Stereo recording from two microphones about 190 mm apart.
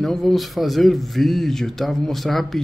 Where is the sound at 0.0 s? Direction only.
Centre (ahead or behind).